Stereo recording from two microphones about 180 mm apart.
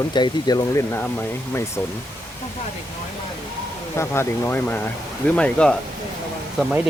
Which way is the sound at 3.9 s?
15° left (ahead or behind).